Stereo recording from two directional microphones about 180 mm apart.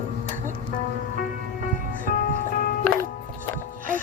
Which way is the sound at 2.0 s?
50° left (ahead or behind).